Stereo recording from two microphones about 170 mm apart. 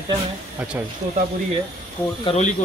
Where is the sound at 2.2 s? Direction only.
40° left (ahead or behind).